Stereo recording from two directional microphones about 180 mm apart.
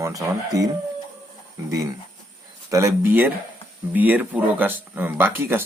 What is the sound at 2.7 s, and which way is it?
Speech, 15° right (ahead or behind).